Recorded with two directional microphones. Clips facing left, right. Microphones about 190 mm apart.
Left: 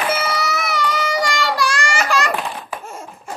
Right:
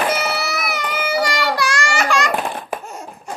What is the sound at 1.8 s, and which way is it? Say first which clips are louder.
Babbling: right 1 dB; centre (ahead or behind).